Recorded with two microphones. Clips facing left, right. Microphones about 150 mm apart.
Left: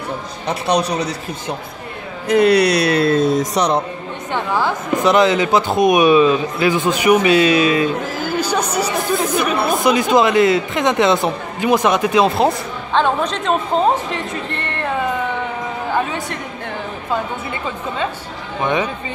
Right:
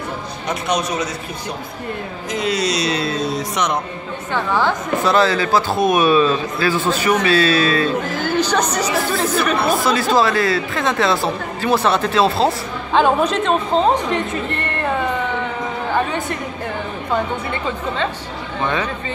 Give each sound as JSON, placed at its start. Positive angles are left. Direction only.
{"t": 0.5, "sound": "a man's voice", "side_deg": 35}
{"t": 2.2, "sound": "speech", "side_deg": 60}
{"t": 3.5, "sound": "a man's voice", "side_deg": 35}
{"t": 4.3, "sound": "a woman's voice", "side_deg": 15}
{"t": 8.2, "sound": "chatter", "side_deg": 10}
{"t": 9.1, "sound": "a woman's voice", "side_deg": 15}
{"t": 12.4, "sound": "a woman's voice", "side_deg": -10}
{"t": 18.6, "sound": "a woman's voice", "side_deg": 15}